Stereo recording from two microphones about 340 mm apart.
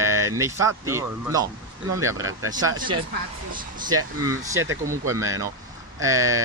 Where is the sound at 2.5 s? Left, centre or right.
Centre.